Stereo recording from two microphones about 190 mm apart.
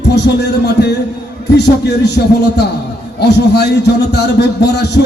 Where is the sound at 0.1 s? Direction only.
60° left (ahead or behind).